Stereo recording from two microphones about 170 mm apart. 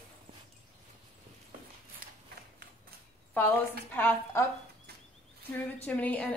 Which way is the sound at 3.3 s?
10° left (ahead or behind).